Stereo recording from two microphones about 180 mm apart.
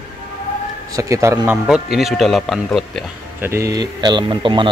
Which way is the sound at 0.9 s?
15° right (ahead or behind).